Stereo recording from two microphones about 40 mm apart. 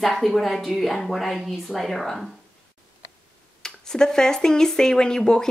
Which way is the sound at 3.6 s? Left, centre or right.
Centre.